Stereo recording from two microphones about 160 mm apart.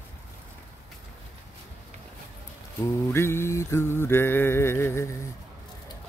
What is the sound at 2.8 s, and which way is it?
Mantra, 15° left (ahead or behind).